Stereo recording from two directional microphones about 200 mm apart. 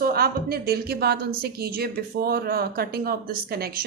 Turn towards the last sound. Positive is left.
turn(degrees=-50)  # may be behind; listen again after turning